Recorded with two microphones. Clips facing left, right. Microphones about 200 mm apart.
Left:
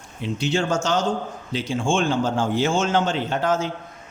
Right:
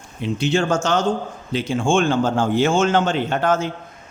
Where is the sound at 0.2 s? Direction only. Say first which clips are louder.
Right 3 dB; 55° right (ahead or behind).